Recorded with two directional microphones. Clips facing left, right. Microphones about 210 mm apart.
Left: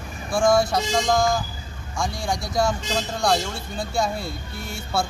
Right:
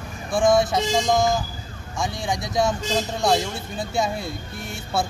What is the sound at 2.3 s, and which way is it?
Speech, 20° right (ahead or behind).